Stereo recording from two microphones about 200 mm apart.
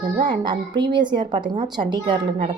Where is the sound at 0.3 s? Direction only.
20° right (ahead or behind).